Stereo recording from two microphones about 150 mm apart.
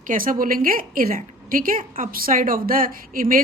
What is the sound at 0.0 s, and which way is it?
A woman's voice, 60° right (ahead or behind).